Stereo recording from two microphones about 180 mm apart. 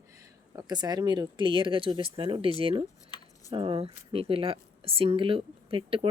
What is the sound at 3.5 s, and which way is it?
A woman's voice, 30° right (ahead or behind).